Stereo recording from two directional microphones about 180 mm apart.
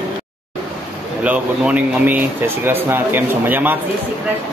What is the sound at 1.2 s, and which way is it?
Speech, 10° right (ahead or behind).